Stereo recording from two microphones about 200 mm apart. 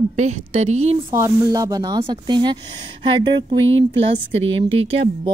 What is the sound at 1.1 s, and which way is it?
Speech, 15° right (ahead or behind).